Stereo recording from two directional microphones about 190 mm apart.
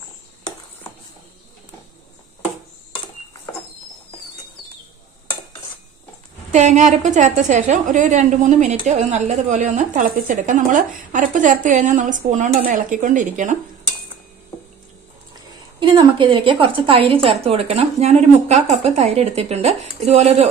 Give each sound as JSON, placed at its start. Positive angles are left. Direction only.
{"t": 6.5, "sound": "a woman's voice", "side_deg": -40}
{"t": 15.8, "sound": "a woman's voice", "side_deg": -25}